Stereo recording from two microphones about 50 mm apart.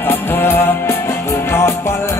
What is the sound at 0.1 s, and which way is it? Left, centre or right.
Music, left.